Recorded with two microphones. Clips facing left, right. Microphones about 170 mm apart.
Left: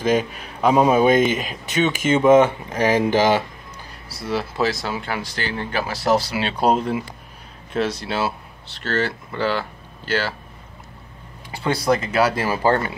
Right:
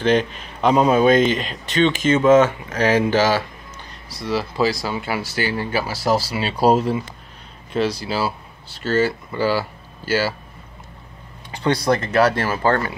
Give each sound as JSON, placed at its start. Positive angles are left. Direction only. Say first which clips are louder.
{"t": 0.0, "sound": "speech", "louder": "right 2 dB", "side_deg": 5}
{"t": 4.2, "sound": "speech", "louder": "right 2 dB", "side_deg": 0}
{"t": 11.6, "sound": "speech", "louder": "right 1 dB", "side_deg": 0}
{"t": 12.4, "sound": "speech", "louder": "even", "side_deg": 20}